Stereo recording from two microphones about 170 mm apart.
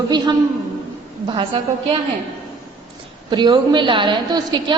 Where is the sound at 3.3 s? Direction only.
25° right (ahead or behind).